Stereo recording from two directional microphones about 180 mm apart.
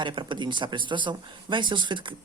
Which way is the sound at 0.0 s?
25° right (ahead or behind).